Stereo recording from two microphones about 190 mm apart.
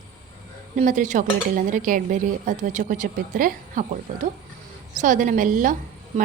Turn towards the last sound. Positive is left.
turn(degrees=-45)  # may be behind; listen again after turning